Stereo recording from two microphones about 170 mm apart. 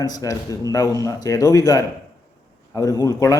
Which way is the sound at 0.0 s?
20° left (ahead or behind).